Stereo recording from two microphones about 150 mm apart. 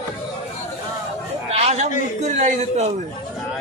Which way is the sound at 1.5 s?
45° right (ahead or behind).